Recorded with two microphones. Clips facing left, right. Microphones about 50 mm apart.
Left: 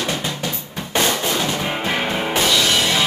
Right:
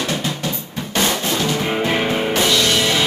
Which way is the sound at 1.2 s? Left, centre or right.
Centre.